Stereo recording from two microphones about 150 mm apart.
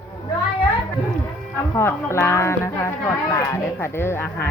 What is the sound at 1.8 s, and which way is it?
Speech, 20° left (ahead or behind).